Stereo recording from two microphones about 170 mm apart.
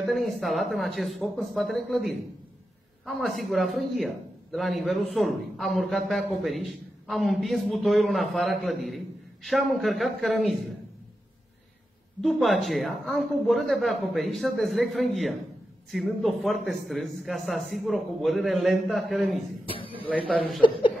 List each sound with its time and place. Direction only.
0.0 s a man's voice: centre (ahead or behind)
12.2 s a man's voice: centre (ahead or behind)
19.7 s a sound: 30° left (ahead or behind)